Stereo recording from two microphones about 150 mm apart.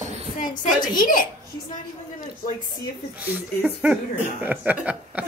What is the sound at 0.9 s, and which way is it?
Speech, 65° left (ahead or behind).